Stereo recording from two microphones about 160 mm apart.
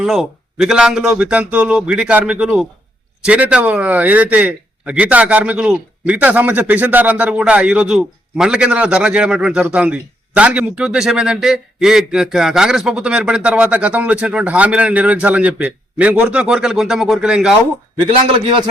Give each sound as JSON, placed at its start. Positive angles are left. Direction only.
{"t": 0.0, "sound": "speech", "side_deg": -5}
{"t": 18.0, "sound": "a man's voice", "side_deg": -35}